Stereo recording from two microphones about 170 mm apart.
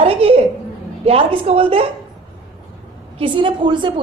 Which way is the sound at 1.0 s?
35° right (ahead or behind).